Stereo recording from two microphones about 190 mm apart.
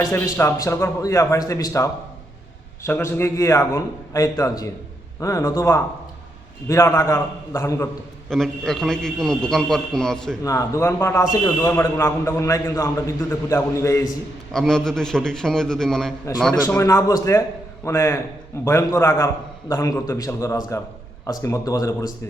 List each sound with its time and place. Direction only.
0.0 s a man's voice: 15° left (ahead or behind)
8.3 s a man's voice: centre (ahead or behind)
10.4 s a man's voice: 15° left (ahead or behind)
14.5 s a man's voice: centre (ahead or behind)
16.6 s a man's voice: 15° left (ahead or behind)